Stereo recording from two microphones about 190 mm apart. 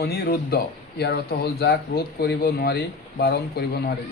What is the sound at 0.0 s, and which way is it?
A man's voice, 55° left (ahead or behind).